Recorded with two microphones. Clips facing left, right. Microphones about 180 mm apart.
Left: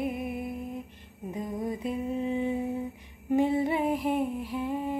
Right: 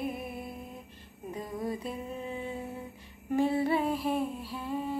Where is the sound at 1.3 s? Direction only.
20° left (ahead or behind).